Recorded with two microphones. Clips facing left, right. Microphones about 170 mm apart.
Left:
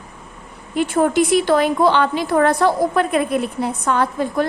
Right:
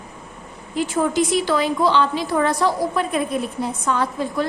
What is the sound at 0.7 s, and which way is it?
A woman's voice, 60° left (ahead or behind).